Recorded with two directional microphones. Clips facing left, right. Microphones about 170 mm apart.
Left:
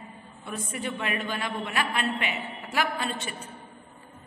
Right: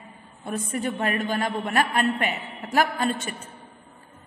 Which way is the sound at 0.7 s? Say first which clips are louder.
Right 5 dB; 45° right (ahead or behind).